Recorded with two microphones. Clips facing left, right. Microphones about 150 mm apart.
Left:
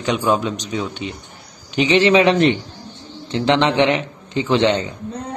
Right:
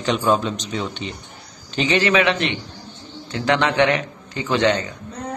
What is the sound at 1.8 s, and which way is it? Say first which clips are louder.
Speech: left 4 dB; 20° left (ahead or behind).